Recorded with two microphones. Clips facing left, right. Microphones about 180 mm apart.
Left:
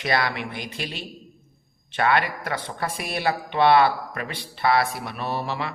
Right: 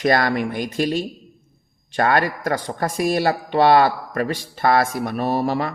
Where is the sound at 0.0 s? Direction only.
45° right (ahead or behind).